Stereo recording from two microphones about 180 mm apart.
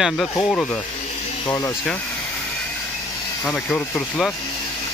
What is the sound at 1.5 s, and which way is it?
Speech, 20° left (ahead or behind).